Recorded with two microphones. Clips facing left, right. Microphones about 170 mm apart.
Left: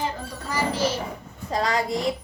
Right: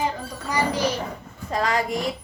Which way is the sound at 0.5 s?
15° right (ahead or behind).